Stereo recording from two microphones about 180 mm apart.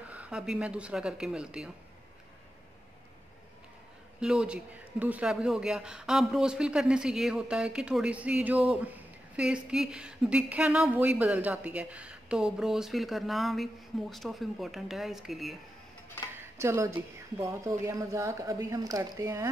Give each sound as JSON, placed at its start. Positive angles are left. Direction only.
{"t": 0.1, "sound": "speech", "side_deg": -5}
{"t": 4.2, "sound": "speech", "side_deg": -5}
{"t": 16.5, "sound": "a woman's voice", "side_deg": -15}